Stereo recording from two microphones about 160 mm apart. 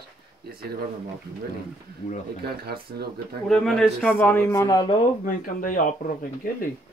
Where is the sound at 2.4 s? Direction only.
75° right (ahead or behind).